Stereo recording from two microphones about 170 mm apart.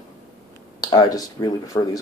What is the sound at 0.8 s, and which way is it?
Speech, 25° left (ahead or behind).